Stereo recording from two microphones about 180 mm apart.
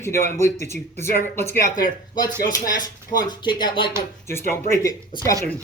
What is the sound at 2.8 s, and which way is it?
Speech, 20° left (ahead or behind).